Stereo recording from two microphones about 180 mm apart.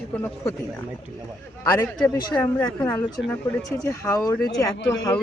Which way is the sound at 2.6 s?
20° left (ahead or behind).